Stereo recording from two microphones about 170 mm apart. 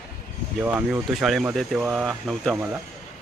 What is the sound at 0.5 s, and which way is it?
Speech, 5° right (ahead or behind).